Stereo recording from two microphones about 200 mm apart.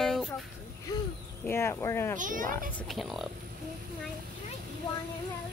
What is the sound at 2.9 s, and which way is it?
Speech, centre (ahead or behind).